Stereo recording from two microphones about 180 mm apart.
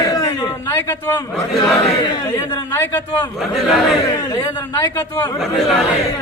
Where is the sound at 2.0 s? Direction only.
25° left (ahead or behind).